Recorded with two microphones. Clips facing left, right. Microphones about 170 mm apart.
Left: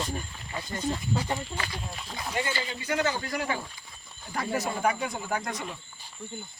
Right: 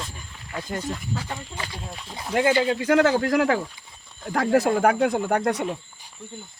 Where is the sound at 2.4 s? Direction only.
85° right.